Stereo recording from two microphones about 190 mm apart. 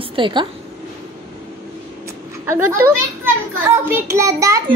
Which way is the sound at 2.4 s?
10° right (ahead or behind).